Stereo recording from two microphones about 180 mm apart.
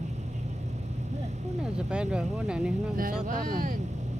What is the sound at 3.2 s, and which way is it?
Speech, 50° right (ahead or behind).